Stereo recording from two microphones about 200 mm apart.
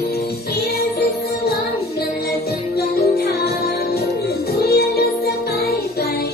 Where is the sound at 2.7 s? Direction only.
50° left (ahead or behind).